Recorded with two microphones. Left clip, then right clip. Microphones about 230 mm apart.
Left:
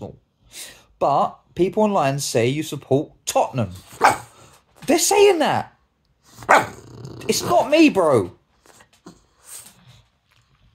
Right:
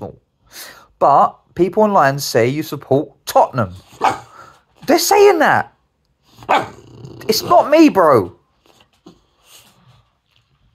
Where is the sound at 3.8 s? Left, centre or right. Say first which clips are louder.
Left 3 dB; centre.